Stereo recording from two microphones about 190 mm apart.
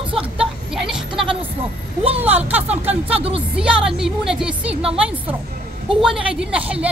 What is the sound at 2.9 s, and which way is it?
Speech, 30° right (ahead or behind).